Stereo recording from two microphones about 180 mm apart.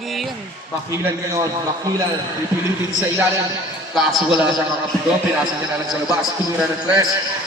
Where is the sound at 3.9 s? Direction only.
Centre (ahead or behind).